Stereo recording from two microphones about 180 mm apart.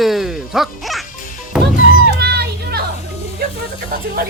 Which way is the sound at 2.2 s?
65° right (ahead or behind).